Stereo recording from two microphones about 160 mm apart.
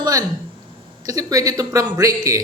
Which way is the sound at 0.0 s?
20° right (ahead or behind).